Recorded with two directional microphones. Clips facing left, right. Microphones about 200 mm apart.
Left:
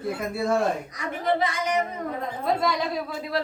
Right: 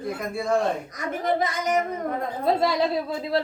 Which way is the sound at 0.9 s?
45° right (ahead or behind).